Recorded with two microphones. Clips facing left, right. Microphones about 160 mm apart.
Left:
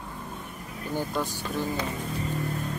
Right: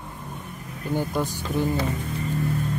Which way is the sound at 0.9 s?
15° right (ahead or behind).